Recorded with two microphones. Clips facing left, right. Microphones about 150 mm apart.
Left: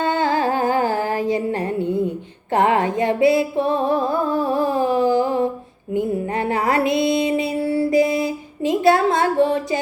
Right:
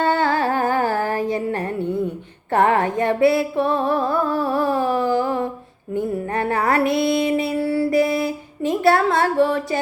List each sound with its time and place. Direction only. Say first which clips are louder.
0.0 s music: even; 15° left (ahead or behind)